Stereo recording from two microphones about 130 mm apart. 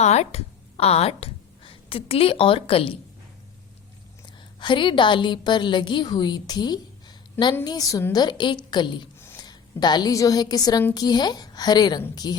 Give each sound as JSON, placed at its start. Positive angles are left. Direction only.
{"t": 0.0, "sound": "a woman's voice", "side_deg": 60}
{"t": 4.6, "sound": "a woman's voice", "side_deg": 40}
{"t": 9.1, "sound": "a sound", "side_deg": 20}
{"t": 9.4, "sound": "a woman's voice", "side_deg": 30}